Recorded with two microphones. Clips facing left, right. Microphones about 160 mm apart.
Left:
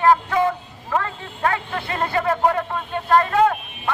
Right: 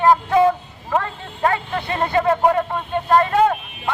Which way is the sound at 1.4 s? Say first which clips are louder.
Right 3 dB; 20° right (ahead or behind).